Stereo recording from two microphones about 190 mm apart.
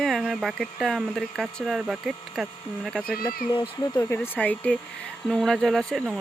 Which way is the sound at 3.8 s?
20° left (ahead or behind).